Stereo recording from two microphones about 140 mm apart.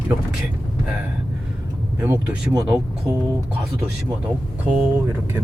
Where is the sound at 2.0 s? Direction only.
15° right (ahead or behind).